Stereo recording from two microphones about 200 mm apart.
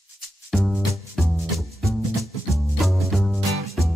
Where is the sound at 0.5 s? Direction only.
Centre (ahead or behind).